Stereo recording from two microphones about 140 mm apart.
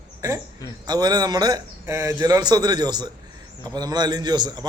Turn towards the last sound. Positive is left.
turn(degrees=-30)  # may be behind; listen again after turning